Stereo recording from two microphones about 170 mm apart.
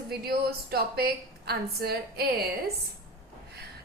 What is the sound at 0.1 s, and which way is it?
A woman's voice, 65° right (ahead or behind).